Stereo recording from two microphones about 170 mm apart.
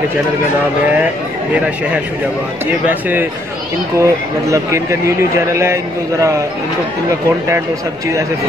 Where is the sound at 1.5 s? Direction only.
5° right (ahead or behind).